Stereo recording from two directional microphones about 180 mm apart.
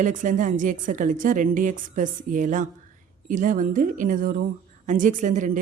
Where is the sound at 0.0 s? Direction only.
45° right (ahead or behind).